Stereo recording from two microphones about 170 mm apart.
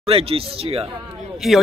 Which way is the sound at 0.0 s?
35° right (ahead or behind).